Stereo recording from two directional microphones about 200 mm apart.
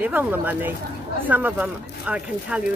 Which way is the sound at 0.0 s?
10° right (ahead or behind).